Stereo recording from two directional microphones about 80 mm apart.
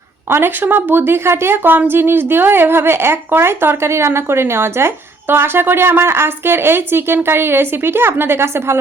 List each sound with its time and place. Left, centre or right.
0.3 s a woman's voice: right